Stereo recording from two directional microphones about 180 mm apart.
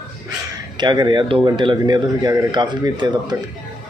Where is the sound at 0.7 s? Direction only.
25° right (ahead or behind).